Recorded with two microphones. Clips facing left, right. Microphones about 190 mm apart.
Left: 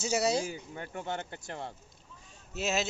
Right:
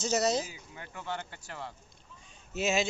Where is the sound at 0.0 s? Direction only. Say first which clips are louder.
Even; 10° left (ahead or behind).